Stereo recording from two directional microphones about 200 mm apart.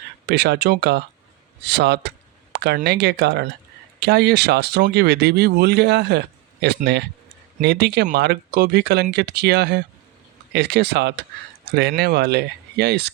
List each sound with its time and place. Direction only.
0.3 s speech: 55° right (ahead or behind)